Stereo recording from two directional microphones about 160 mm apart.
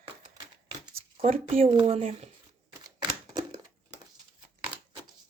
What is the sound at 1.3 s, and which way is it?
Speech, 35° right (ahead or behind).